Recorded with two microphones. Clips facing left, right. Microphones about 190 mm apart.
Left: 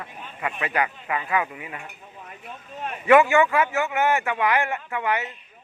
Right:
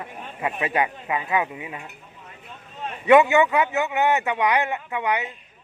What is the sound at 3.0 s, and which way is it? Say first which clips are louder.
Speech: right 1 dB; 20° right (ahead or behind).